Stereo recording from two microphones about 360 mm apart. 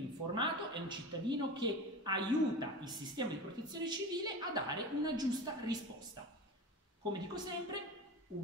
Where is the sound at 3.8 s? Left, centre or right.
Centre.